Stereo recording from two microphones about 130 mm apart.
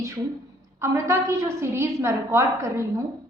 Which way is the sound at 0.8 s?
20° right (ahead or behind).